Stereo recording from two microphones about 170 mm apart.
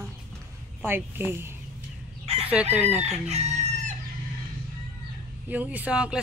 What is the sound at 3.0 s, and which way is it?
Chicken, 40° right (ahead or behind).